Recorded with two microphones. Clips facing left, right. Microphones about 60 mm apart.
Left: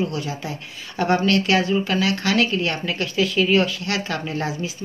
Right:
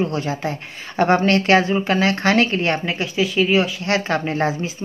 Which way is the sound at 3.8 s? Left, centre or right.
Right.